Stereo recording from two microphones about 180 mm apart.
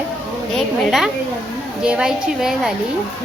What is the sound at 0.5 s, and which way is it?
A woman's voice, centre (ahead or behind).